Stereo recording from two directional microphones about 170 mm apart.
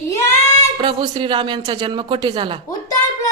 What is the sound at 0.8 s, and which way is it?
Speech, 30° right (ahead or behind).